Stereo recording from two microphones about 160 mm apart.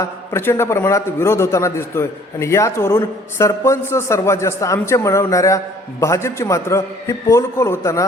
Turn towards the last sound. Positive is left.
turn(degrees=15)  # may be behind; listen again after turning